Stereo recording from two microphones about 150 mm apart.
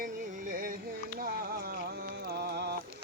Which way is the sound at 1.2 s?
90° right.